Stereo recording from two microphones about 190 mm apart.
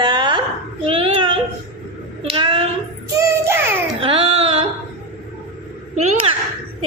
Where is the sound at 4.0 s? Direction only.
30° right (ahead or behind).